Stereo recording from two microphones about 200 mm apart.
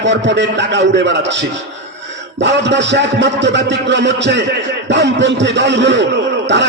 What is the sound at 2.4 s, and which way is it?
Speech, 60° right (ahead or behind).